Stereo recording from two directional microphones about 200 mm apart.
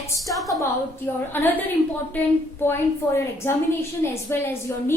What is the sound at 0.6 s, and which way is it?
A woman's voice, 10° left (ahead or behind).